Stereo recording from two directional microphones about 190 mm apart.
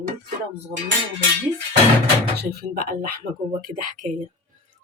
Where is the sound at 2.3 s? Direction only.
50° right (ahead or behind).